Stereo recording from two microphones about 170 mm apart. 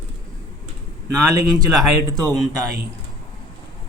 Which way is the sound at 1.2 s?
20° right (ahead or behind).